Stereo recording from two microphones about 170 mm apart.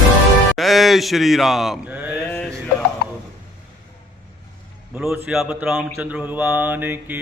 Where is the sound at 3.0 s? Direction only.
65° left (ahead or behind).